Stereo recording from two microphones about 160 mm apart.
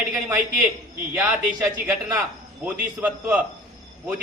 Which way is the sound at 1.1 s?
10° right (ahead or behind).